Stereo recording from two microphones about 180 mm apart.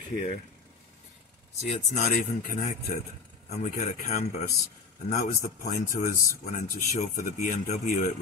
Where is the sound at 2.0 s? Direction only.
45° left (ahead or behind).